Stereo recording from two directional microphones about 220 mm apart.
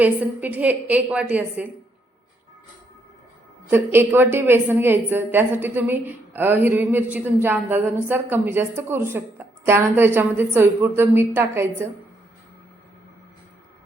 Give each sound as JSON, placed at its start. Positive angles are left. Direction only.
{"t": 0.4, "sound": "a woman's voice", "side_deg": -10}
{"t": 3.7, "sound": "a woman's voice", "side_deg": -10}